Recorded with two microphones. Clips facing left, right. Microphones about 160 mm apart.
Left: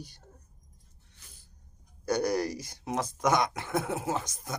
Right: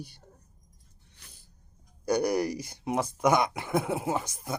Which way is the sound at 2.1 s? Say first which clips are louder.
Right 2 dB; 10° right (ahead or behind).